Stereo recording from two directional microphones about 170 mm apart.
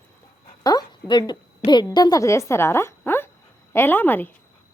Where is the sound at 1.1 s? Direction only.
25° left (ahead or behind).